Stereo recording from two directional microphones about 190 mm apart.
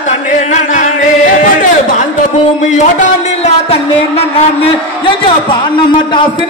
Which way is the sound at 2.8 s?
35° left (ahead or behind).